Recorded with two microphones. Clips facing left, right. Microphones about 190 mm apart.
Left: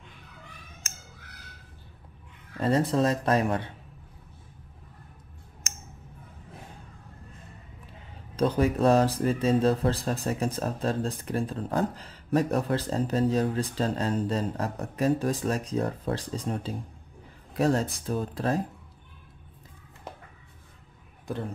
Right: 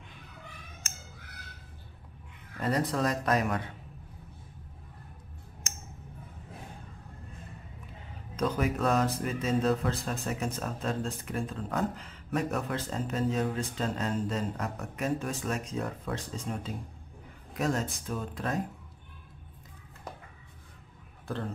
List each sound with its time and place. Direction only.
2.5 s speech: 30° left (ahead or behind)
8.4 s speech: 30° left (ahead or behind)